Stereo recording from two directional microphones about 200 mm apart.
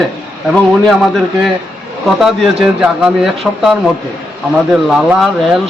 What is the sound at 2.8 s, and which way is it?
Speech, 5° right (ahead or behind).